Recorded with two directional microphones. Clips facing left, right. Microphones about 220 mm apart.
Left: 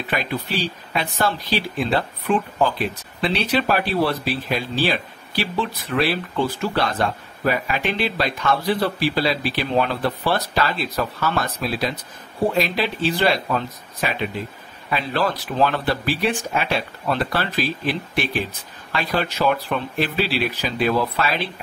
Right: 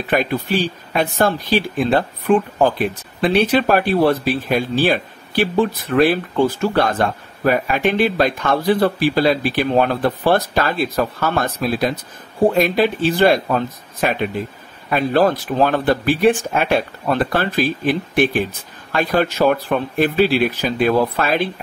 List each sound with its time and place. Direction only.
0.1 s speech: 50° right (ahead or behind)